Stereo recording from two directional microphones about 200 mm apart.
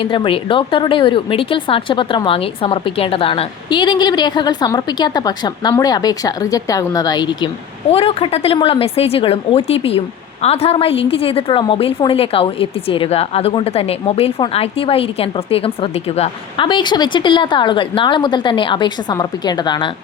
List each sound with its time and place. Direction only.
0.0 s a woman's voice: 25° left (ahead or behind)